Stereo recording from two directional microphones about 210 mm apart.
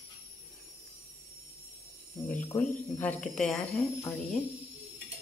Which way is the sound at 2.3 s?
5° left (ahead or behind).